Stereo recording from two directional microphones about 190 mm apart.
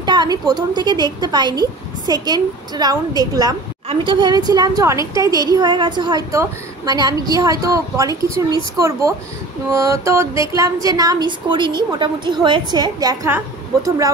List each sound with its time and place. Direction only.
0.0 s a woman's voice: 20° right (ahead or behind)